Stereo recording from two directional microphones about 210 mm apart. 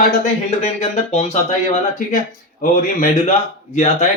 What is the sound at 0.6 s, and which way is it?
A man's voice, 30° left (ahead or behind).